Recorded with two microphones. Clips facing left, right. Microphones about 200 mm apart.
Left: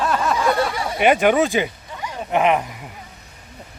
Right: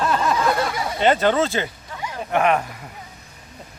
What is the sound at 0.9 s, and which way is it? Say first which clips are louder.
Speech: left 2 dB; 15° left (ahead or behind).